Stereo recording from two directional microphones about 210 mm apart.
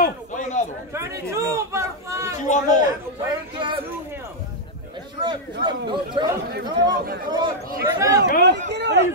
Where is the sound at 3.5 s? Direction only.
20° right (ahead or behind).